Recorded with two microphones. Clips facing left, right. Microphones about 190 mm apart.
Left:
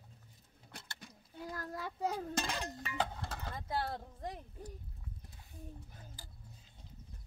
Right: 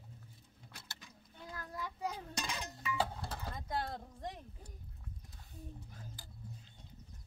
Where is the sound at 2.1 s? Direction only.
50° left (ahead or behind).